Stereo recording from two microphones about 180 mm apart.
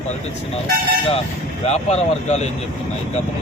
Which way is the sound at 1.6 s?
35° left (ahead or behind).